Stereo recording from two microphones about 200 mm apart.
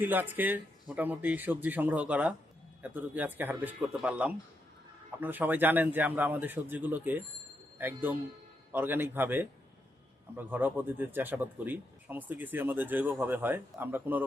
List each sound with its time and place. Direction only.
0.0 s speech: 10° right (ahead or behind)